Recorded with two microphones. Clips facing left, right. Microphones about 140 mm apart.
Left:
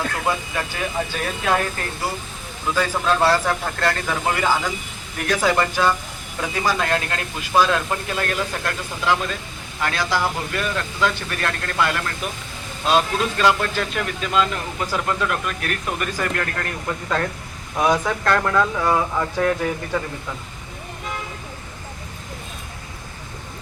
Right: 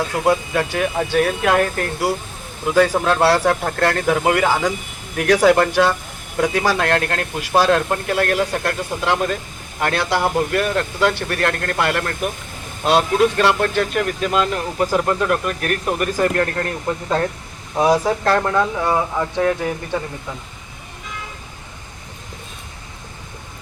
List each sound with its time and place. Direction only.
0.3 s speech: 70° right (ahead or behind)
2.7 s a man's voice: 60° right (ahead or behind)
3.5 s a man's voice: 50° right (ahead or behind); by 19.5 s 20° right (ahead or behind)